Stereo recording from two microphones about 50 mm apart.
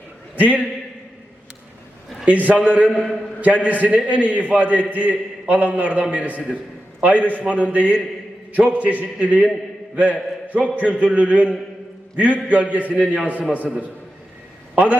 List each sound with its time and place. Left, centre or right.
0.3 s a man's voice: right
2.2 s a man's voice: right